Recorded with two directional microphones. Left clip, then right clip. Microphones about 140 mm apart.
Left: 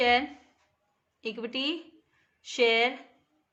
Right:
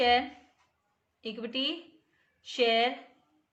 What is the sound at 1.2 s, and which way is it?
A woman's voice, 40° left (ahead or behind).